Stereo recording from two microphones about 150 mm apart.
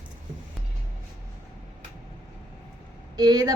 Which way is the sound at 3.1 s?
25° right (ahead or behind).